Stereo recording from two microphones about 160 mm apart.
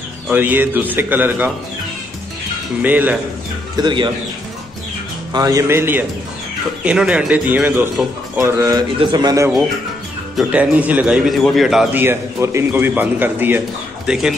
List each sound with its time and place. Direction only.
0.3 s a man's voice: 10° right (ahead or behind)
2.8 s a man's voice: 10° right (ahead or behind)
3.7 s speech: 30° right (ahead or behind)
5.3 s a man's voice: 20° right (ahead or behind)
10.3 s a man's voice: 10° right (ahead or behind)
12.0 s a man's voice: 15° right (ahead or behind)